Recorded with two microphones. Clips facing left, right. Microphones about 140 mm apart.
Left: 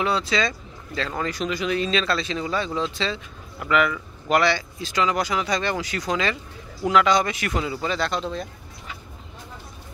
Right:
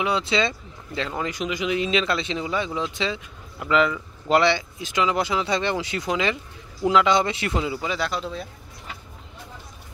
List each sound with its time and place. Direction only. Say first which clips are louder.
0.0 s speech: even; 20° right (ahead or behind); by 8.5 s 5° right (ahead or behind)